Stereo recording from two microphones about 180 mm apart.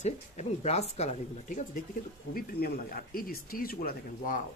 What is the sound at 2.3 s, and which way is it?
Speech, 55° left (ahead or behind).